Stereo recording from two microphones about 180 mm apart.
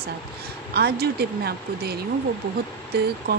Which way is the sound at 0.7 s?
60° right (ahead or behind).